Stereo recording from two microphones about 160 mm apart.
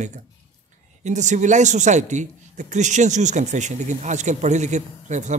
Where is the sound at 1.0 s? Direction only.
50° right (ahead or behind).